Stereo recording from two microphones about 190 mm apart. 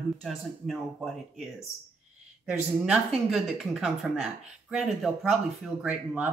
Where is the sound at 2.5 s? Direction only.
5° right (ahead or behind).